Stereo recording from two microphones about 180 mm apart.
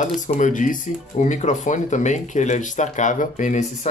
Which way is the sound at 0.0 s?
45° left (ahead or behind).